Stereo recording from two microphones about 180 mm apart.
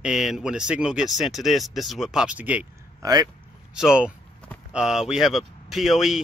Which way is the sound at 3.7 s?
5° right (ahead or behind).